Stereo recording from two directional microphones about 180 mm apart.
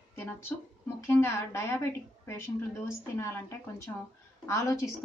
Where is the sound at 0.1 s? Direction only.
15° left (ahead or behind).